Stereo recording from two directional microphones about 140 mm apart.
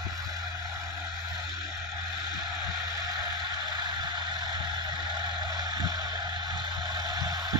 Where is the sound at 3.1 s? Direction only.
30° right (ahead or behind).